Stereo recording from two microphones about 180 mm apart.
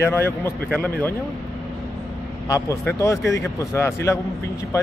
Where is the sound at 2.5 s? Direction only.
15° left (ahead or behind).